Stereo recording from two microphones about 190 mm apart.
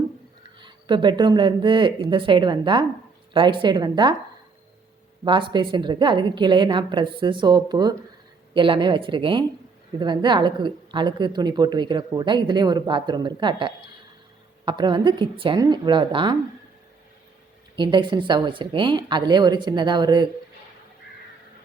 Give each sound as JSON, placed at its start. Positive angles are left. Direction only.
{"t": 0.6, "sound": "a woman's voice", "side_deg": -25}
{"t": 5.2, "sound": "a woman's voice", "side_deg": -25}
{"t": 17.7, "sound": "a woman's voice", "side_deg": -25}